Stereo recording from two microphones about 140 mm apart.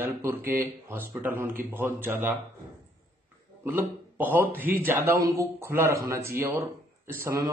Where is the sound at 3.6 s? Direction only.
15° right (ahead or behind).